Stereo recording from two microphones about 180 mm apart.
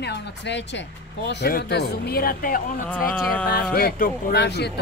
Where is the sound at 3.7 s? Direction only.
55° left (ahead or behind).